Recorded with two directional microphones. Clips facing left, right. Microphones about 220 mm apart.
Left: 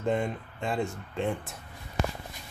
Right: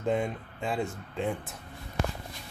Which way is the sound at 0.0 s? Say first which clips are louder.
Even; centre (ahead or behind).